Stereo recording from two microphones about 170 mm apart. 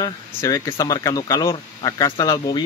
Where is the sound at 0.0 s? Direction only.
20° left (ahead or behind).